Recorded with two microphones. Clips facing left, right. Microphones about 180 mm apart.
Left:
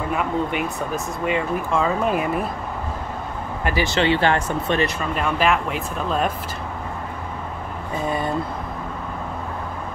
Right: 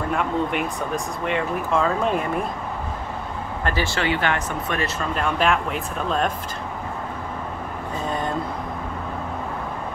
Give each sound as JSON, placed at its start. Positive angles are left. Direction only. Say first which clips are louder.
{"t": 0.1, "sound": "speech", "louder": "even", "side_deg": 5}
{"t": 3.6, "sound": "speech", "louder": "left 4 dB", "side_deg": 15}
{"t": 5.1, "sound": "speech", "louder": "even", "side_deg": 0}